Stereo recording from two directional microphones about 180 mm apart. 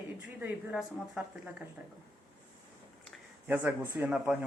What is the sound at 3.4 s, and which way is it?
Speech, 10° right (ahead or behind).